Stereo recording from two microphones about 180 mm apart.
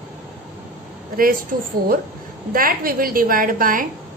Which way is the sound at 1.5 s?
55° right (ahead or behind).